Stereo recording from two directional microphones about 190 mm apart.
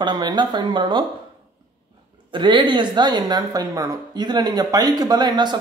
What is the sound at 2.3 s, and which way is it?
Speech, 25° right (ahead or behind).